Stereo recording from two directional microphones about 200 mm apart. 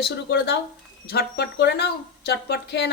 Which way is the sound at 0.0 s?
55° left (ahead or behind).